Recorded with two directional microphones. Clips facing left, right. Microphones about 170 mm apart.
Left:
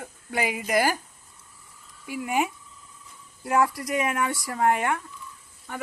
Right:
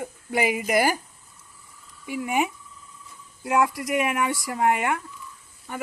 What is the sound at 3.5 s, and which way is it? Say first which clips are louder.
Speech: right 1 dB; centre (ahead or behind).